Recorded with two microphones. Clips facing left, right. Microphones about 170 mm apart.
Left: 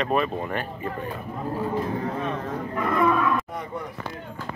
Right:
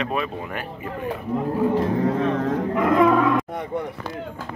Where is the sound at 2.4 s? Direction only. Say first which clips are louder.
Right 7 dB; 90° right.